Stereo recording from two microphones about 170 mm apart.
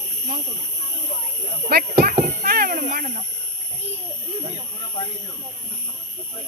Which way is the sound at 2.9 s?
50° right (ahead or behind).